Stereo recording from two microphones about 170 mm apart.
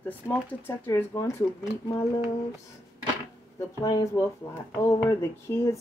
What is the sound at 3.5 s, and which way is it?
Speech, 20° left (ahead or behind).